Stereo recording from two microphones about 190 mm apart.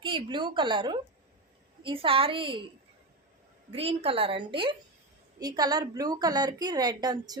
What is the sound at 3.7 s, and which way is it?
A woman's voice, 30° right (ahead or behind).